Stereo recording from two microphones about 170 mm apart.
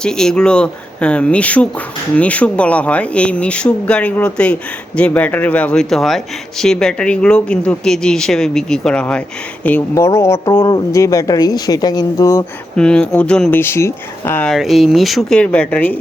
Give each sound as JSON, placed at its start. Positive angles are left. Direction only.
{"t": 0.0, "sound": "speech", "side_deg": 5}
{"t": 12.7, "sound": "speech", "side_deg": 5}
{"t": 14.5, "sound": "speech", "side_deg": 0}